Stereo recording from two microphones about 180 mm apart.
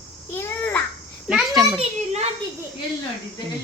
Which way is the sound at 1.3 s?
Centre (ahead or behind).